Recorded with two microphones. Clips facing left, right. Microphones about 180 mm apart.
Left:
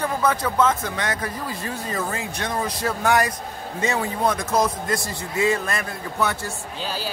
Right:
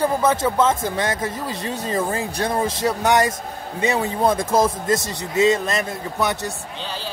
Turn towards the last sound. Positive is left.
turn(degrees=-20)  # may be behind; listen again after turning